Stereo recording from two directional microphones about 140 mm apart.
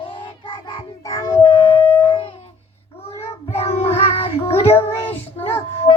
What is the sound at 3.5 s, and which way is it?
Child singing, 45° left (ahead or behind).